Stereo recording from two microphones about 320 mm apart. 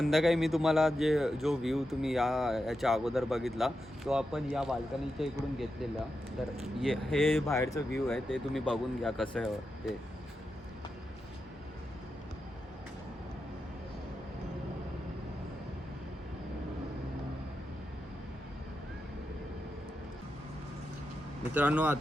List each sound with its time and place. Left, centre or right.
0.0 s speech: centre
6.6 s speech: centre
21.5 s speech: centre